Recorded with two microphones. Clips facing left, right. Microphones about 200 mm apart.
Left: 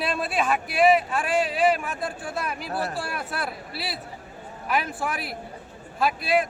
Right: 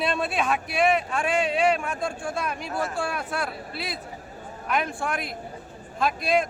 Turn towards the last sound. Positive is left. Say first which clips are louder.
# even
turn(degrees=5)  # may be behind; listen again after turning